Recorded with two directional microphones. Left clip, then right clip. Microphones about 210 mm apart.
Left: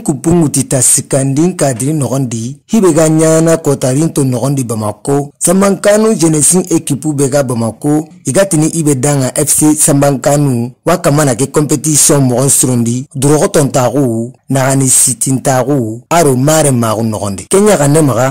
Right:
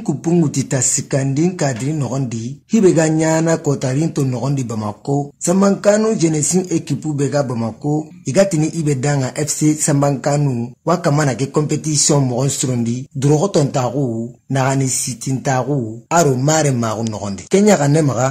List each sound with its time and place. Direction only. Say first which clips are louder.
0.0 s speech: left 6 dB; 55° left (ahead or behind)